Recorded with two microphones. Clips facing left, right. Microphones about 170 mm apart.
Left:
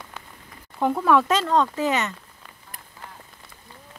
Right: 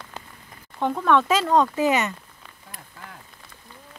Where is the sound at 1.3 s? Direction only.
10° right (ahead or behind).